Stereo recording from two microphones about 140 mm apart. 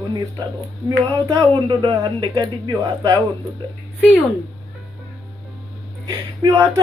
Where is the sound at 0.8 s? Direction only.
30° right (ahead or behind).